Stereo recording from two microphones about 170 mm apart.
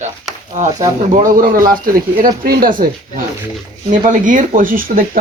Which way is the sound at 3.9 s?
50° right (ahead or behind).